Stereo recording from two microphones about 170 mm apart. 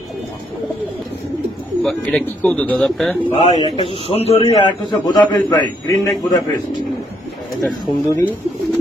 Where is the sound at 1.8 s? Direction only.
5° left (ahead or behind).